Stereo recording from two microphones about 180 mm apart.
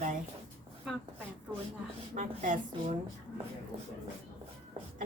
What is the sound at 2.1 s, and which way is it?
Speech, 45° right (ahead or behind).